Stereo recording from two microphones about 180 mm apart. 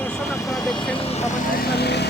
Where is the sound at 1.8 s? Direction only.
65° left (ahead or behind).